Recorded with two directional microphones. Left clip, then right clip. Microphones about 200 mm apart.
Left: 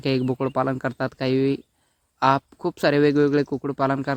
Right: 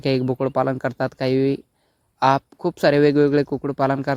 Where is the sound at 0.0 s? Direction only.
35° right (ahead or behind).